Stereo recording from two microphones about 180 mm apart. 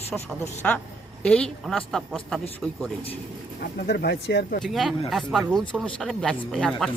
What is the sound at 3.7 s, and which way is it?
Speech, 60° left (ahead or behind).